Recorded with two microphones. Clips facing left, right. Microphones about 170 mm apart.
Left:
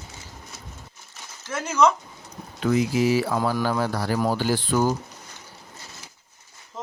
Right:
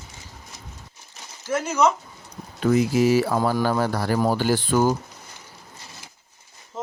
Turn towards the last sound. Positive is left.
turn(degrees=-5)  # may be behind; listen again after turning